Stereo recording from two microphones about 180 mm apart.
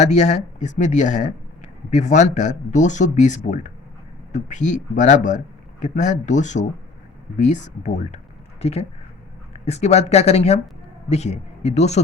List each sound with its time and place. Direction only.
0.0 s speech: 40° left (ahead or behind)